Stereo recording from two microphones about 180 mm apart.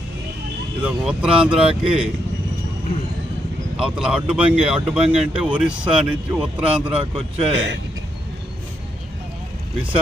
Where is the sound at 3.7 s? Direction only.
5° right (ahead or behind).